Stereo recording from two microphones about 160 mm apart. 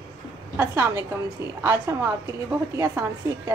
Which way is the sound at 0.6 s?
15° right (ahead or behind).